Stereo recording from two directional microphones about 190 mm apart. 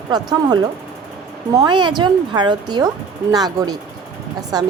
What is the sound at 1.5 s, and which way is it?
A child's voice, 20° right (ahead or behind).